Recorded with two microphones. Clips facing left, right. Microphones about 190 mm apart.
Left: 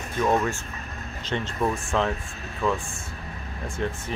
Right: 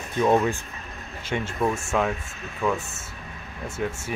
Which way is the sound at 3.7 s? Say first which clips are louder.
Right 1 dB; 10° right (ahead or behind).